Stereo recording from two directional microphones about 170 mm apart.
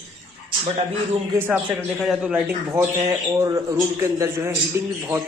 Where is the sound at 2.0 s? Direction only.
5° right (ahead or behind).